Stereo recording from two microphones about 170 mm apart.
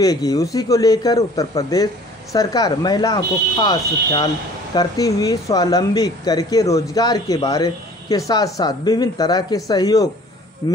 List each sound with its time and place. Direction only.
0.0 s speech: 20° left (ahead or behind)